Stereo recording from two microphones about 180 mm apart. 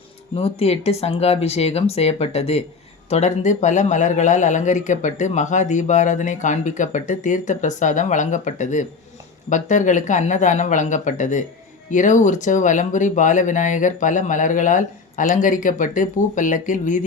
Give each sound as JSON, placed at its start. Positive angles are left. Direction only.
{"t": 0.3, "sound": "speech", "side_deg": 35}